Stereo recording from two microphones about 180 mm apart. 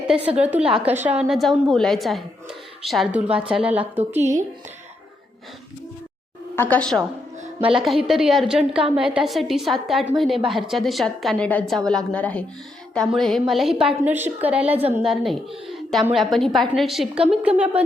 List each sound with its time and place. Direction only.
0.3 s a woman's voice: 10° right (ahead or behind)
6.6 s a woman's voice: 10° left (ahead or behind)
8.7 s a woman's voice: 30° right (ahead or behind)
9.1 s a woman's voice: centre (ahead or behind)